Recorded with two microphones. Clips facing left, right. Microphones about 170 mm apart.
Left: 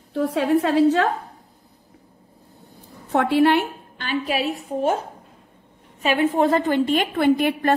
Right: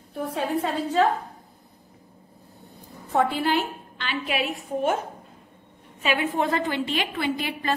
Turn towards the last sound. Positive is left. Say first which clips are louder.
# left 9 dB
turn(degrees=55)  # may be behind; listen again after turning